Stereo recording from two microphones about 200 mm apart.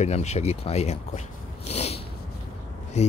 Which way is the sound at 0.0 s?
35° left (ahead or behind).